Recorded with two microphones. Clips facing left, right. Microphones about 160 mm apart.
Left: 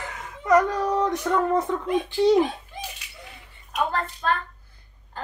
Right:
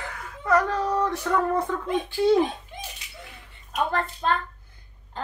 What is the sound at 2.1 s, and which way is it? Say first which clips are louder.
Speech: left 1 dB; 20° left (ahead or behind).